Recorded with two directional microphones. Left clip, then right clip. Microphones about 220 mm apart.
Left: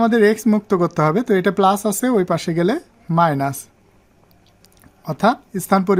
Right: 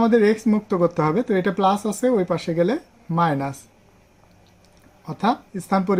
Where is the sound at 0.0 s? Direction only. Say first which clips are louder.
Left 2 dB; 50° left (ahead or behind).